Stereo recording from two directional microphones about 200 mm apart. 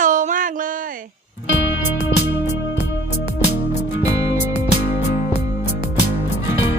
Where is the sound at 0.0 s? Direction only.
40° right (ahead or behind).